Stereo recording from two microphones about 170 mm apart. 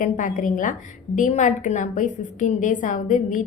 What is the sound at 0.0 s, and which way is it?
A woman's voice, 50° left (ahead or behind).